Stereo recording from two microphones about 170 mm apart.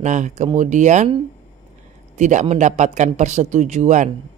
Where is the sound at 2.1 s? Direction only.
45° right (ahead or behind).